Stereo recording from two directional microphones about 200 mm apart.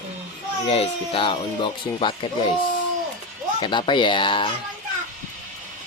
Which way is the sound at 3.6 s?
25° left (ahead or behind).